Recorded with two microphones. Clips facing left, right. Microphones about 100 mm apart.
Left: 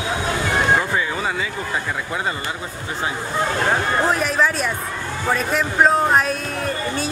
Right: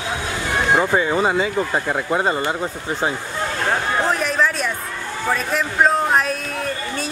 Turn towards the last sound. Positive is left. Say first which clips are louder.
# left 2 dB
turn(degrees=0)  # may be behind; listen again after turning